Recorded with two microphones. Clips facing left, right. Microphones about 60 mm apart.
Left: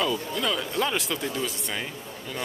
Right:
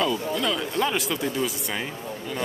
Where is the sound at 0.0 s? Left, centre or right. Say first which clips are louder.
Right 2 dB; centre.